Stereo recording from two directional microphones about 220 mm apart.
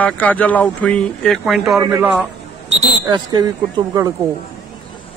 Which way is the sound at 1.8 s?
10° right (ahead or behind).